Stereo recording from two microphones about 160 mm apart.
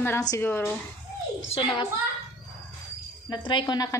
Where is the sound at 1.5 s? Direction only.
30° left (ahead or behind).